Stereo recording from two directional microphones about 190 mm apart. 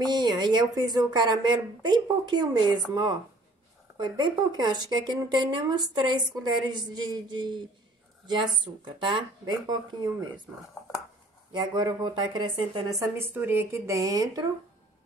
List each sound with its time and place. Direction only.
0.0 s speech: 20° right (ahead or behind)
8.8 s speech: 25° right (ahead or behind)
11.5 s speech: 25° right (ahead or behind)
13.2 s speech: 10° right (ahead or behind)